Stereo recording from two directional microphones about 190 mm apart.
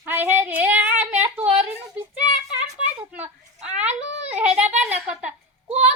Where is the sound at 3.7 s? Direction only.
5° right (ahead or behind).